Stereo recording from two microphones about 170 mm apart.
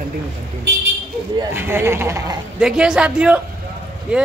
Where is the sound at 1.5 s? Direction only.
15° right (ahead or behind).